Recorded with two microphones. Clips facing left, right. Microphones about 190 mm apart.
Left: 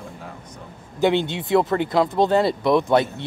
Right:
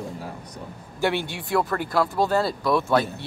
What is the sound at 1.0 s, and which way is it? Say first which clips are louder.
Speech: left 5 dB; 20° left (ahead or behind).